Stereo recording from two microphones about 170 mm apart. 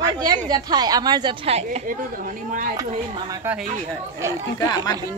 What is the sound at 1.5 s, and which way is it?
Speech, 40° right (ahead or behind).